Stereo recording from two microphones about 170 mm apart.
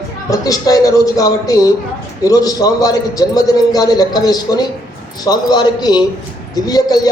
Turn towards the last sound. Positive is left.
turn(degrees=20)  # may be behind; listen again after turning